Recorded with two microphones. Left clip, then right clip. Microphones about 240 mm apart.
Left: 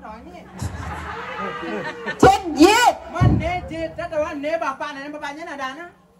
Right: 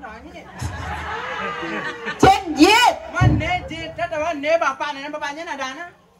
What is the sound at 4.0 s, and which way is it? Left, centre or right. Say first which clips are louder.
A woman's voice: right 3 dB; centre.